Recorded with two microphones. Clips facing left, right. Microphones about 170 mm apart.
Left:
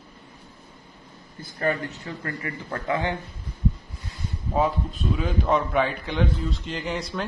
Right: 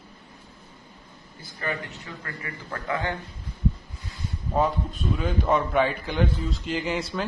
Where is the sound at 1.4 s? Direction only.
45° left (ahead or behind); by 3.1 s 25° left (ahead or behind).